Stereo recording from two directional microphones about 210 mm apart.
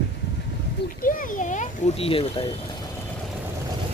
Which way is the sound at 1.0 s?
40° left (ahead or behind).